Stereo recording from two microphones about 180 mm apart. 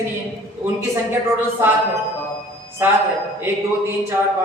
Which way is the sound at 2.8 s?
10° right (ahead or behind).